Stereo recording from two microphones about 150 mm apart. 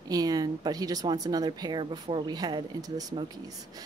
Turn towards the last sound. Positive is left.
turn(degrees=-25)  # may be behind; listen again after turning